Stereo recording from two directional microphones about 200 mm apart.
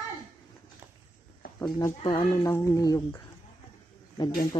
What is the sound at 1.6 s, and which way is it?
Speech, 20° left (ahead or behind).